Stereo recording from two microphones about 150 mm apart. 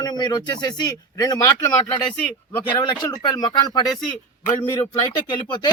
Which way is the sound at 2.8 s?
30° left (ahead or behind).